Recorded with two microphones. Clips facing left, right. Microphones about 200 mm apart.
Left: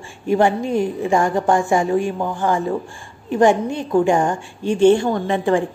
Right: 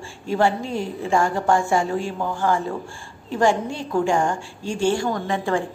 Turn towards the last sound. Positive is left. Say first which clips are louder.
# left 5 dB
turn(degrees=20)  # may be behind; listen again after turning